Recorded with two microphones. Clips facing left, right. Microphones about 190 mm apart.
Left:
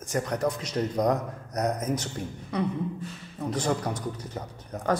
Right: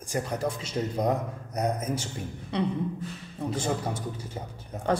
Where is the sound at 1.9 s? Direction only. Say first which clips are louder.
Left 2 dB; 30° right (ahead or behind).